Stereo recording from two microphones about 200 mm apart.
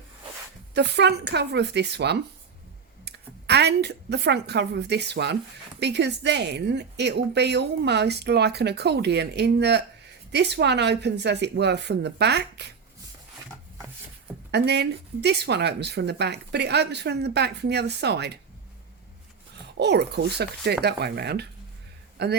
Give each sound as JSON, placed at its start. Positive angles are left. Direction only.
{"t": 0.7, "sound": "a woman's voice", "side_deg": -55}
{"t": 14.5, "sound": "a woman's voice", "side_deg": -55}
{"t": 19.7, "sound": "a woman's voice", "side_deg": -55}